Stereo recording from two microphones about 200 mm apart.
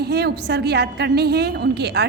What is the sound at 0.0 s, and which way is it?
A woman's voice, 55° right (ahead or behind).